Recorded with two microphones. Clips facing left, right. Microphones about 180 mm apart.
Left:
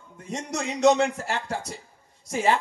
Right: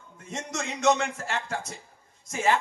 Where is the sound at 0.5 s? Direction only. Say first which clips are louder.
Left 5 dB; 35° left (ahead or behind).